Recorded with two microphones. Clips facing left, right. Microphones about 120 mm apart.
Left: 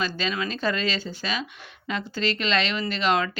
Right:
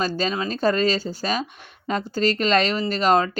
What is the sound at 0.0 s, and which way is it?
A woman's voice, 40° right (ahead or behind).